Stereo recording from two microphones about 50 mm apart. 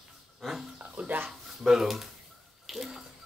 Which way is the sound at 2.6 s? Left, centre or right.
Centre.